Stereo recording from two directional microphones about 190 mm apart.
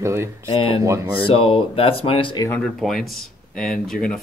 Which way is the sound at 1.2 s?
30° left (ahead or behind).